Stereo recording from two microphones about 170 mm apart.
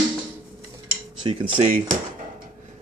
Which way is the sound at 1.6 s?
45° right (ahead or behind).